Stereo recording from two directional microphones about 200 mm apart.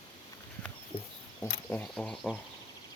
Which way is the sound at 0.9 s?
25° left (ahead or behind).